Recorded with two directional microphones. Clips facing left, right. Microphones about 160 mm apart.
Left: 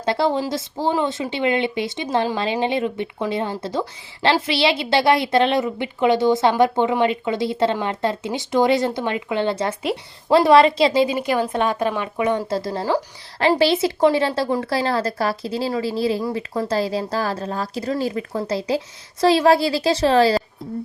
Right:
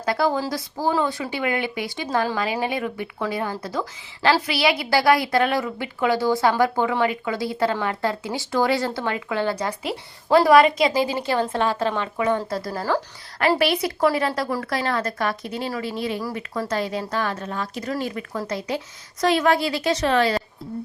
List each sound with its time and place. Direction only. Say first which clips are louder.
0.0 s speech: left 2 dB; 25° left (ahead or behind)